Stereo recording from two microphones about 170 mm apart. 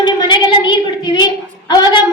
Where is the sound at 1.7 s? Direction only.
25° left (ahead or behind).